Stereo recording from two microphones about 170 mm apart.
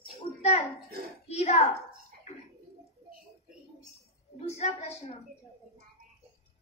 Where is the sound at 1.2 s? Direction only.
40° left (ahead or behind).